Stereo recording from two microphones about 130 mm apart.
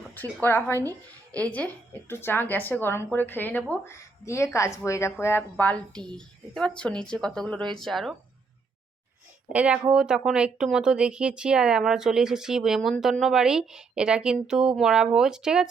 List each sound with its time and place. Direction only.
0.1 s speech: 15° left (ahead or behind)
0.8 s speech: 25° right (ahead or behind)
1.4 s a woman's voice: 10° left (ahead or behind)
9.5 s a woman's voice: 10° right (ahead or behind)